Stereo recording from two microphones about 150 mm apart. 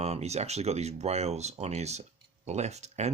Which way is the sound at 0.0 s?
45° right (ahead or behind).